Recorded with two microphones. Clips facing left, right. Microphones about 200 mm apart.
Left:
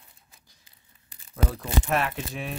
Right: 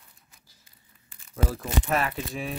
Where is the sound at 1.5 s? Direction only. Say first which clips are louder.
Left 1 dB; centre (ahead or behind).